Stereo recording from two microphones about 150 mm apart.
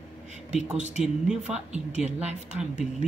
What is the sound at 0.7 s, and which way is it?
Speech, 50° right (ahead or behind).